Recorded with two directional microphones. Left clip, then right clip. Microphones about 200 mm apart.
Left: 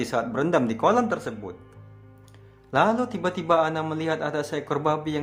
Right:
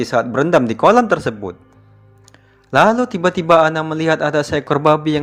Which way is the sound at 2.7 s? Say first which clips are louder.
Right 9 dB; 30° right (ahead or behind).